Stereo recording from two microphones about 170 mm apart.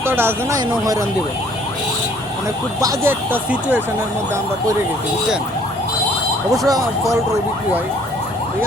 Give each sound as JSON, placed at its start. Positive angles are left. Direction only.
{"t": 0.0, "sound": "speech", "side_deg": -15}
{"t": 2.8, "sound": "speech", "side_deg": -15}
{"t": 6.7, "sound": "speech", "side_deg": -20}